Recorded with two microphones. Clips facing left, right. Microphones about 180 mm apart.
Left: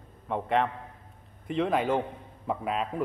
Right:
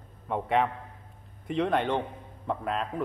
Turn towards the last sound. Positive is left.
turn(degrees=5)  # may be behind; listen again after turning